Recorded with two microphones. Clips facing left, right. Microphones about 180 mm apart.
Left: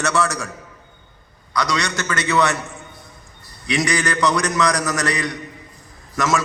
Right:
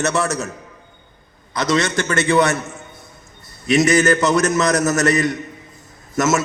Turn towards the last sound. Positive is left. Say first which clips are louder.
# right 3 dB
turn(degrees=-25)  # may be behind; listen again after turning